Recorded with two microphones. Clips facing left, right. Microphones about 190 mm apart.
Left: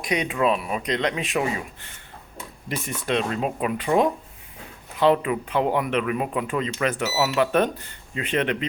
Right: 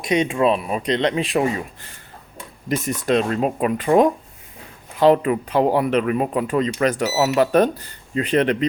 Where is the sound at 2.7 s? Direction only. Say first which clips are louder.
Right 6 dB; 40° right (ahead or behind).